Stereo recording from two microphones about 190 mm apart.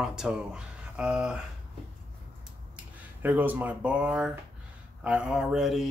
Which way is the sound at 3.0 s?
10° right (ahead or behind).